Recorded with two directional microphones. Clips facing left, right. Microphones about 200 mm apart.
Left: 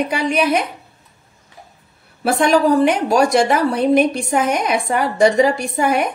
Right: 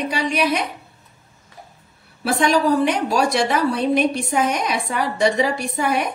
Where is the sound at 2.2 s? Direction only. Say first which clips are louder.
Left 3 dB; 55° left (ahead or behind).